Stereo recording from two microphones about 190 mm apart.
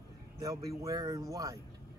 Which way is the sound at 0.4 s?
20° right (ahead or behind).